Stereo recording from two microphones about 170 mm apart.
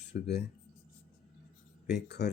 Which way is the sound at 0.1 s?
80° left.